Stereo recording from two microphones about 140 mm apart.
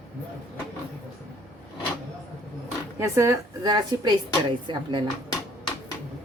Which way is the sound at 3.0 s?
20° right (ahead or behind).